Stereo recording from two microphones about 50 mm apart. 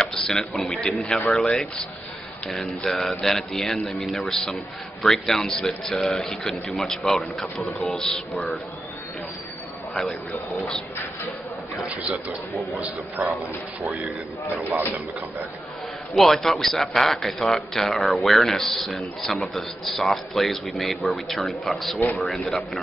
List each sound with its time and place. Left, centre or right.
0.0 s a man's voice: centre
13.2 s speech: centre
16.2 s a man's voice: centre